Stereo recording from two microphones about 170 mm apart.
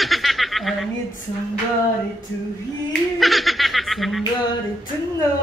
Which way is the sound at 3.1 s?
Centre (ahead or behind).